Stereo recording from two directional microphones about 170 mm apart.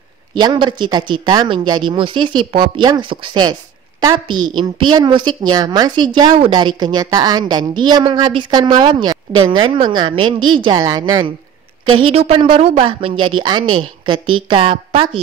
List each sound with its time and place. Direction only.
0.4 s a woman's voice: 25° right (ahead or behind)
11.9 s speech: 35° right (ahead or behind)